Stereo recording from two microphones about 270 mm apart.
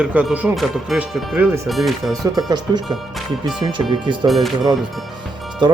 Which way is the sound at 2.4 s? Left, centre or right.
Centre.